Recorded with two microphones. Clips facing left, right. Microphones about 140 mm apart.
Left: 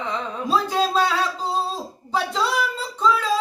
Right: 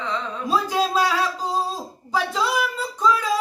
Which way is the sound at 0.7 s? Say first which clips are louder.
Right 1 dB; 10° right (ahead or behind).